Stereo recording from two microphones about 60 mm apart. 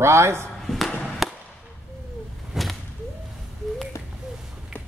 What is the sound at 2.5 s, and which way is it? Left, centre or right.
Whip, centre.